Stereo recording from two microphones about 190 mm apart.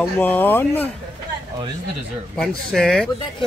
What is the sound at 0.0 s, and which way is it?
Speech, 10° left (ahead or behind).